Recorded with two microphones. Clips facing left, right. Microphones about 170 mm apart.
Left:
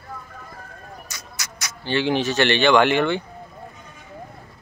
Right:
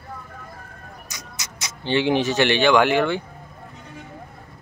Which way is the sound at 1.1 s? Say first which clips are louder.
Even; 20° right (ahead or behind).